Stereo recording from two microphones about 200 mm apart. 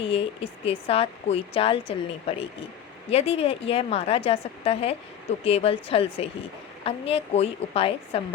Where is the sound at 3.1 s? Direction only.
30° left (ahead or behind).